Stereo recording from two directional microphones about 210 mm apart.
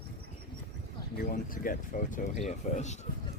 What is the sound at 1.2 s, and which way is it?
Speech, 40° left (ahead or behind).